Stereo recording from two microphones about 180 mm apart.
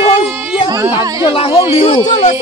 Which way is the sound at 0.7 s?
20° right (ahead or behind).